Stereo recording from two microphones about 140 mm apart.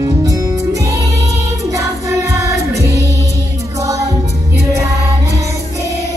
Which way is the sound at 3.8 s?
20° right (ahead or behind).